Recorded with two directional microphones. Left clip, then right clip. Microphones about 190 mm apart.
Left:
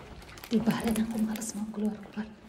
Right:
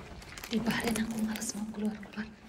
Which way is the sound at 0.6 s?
15° left (ahead or behind).